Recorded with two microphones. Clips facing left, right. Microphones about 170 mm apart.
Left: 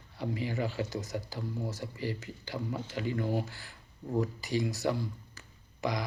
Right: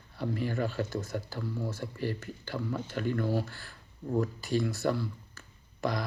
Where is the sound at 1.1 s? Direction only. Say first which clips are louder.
Right 1 dB; 55° right (ahead or behind).